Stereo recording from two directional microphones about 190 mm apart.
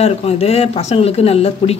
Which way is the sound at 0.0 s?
30° left (ahead or behind).